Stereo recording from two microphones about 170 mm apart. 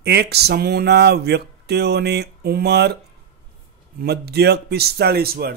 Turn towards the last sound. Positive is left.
turn(degrees=-65)  # may be behind; listen again after turning